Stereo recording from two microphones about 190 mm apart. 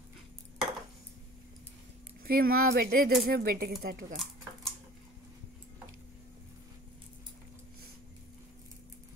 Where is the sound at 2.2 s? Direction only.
50° right (ahead or behind).